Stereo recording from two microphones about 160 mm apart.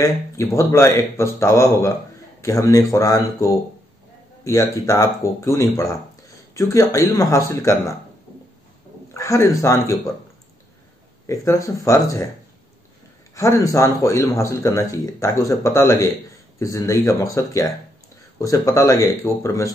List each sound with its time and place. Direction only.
0.0 s speech: 20° left (ahead or behind)
9.1 s speech: 20° left (ahead or behind)
11.2 s speech: 20° left (ahead or behind)
13.3 s speech: 20° left (ahead or behind)